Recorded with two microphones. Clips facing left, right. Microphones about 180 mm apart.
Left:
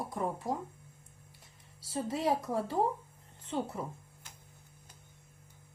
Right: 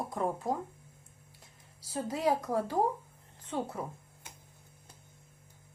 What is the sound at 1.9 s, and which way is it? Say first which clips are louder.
Speech: right 1 dB; centre (ahead or behind).